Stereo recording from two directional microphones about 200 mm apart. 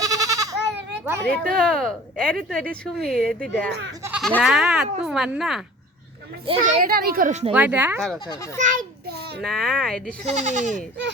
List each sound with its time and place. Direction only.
0.0 s goat: 20° right (ahead or behind)
1.3 s speech: 5° left (ahead or behind)
3.7 s speech: 60° right (ahead or behind)
4.2 s speech: 5° left (ahead or behind)
6.6 s a child's voice: 40° right (ahead or behind)
7.5 s speech: 10° right (ahead or behind)
8.5 s a child's voice: 40° right (ahead or behind)
9.4 s speech: centre (ahead or behind)
10.2 s a child's voice: 35° right (ahead or behind)